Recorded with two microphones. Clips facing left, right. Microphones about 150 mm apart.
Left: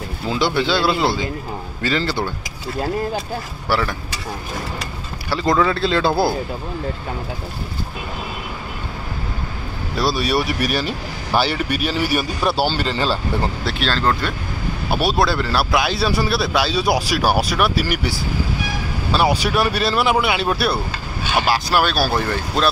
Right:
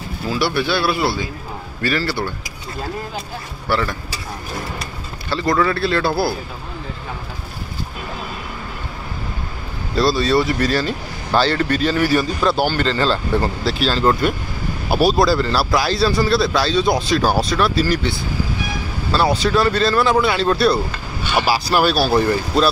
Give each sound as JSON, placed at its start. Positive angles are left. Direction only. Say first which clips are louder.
{"t": 0.3, "sound": "speech", "louder": "left 1 dB", "side_deg": 20}
{"t": 3.6, "sound": "speech", "louder": "right 1 dB", "side_deg": 10}
{"t": 5.3, "sound": "speech", "louder": "even", "side_deg": 20}
{"t": 9.9, "sound": "speech", "louder": "right 4 dB", "side_deg": 10}
{"t": 13.7, "sound": "a man's voice", "louder": "right 4 dB", "side_deg": -5}
{"t": 19.1, "sound": "a man's voice", "louder": "right 1 dB", "side_deg": 10}